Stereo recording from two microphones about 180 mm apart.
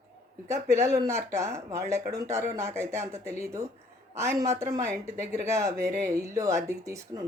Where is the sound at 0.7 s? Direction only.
15° right (ahead or behind).